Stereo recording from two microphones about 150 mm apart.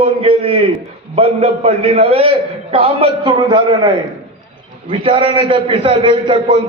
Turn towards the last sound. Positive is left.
turn(degrees=-35)  # may be behind; listen again after turning